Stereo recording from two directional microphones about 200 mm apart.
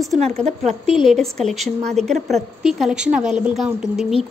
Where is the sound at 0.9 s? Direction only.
Centre (ahead or behind).